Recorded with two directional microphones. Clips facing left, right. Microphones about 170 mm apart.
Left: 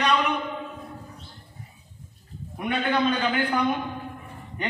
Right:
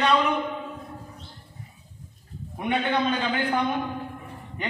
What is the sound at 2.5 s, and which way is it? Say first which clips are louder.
A man's voice: even; 25° right (ahead or behind).